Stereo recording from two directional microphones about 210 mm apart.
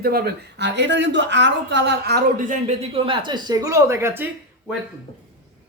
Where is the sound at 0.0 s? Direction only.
45° right (ahead or behind); by 4.3 s 10° right (ahead or behind).